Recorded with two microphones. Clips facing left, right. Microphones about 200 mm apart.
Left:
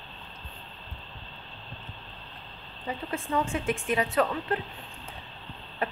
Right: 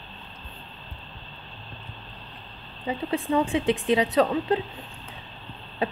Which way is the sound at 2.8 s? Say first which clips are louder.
Right 6 dB; 15° right (ahead or behind).